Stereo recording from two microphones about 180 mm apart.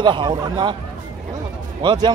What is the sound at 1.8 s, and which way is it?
Speech, 25° right (ahead or behind).